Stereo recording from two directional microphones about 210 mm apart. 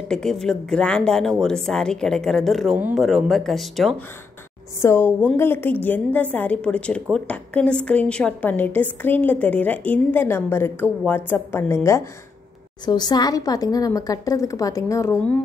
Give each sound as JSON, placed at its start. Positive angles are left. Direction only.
{"t": 0.1, "sound": "speech", "side_deg": 0}
{"t": 4.8, "sound": "a woman's voice", "side_deg": 10}